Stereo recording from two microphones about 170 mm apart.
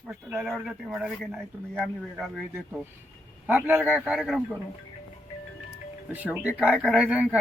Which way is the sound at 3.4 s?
10° right (ahead or behind).